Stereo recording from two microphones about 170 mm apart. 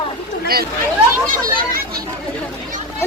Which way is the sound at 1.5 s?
60° right (ahead or behind).